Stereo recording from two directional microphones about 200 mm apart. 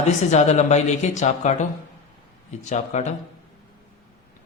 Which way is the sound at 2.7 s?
35° left (ahead or behind).